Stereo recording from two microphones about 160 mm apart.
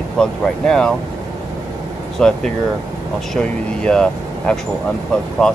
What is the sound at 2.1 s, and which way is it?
Speech, 5° left (ahead or behind).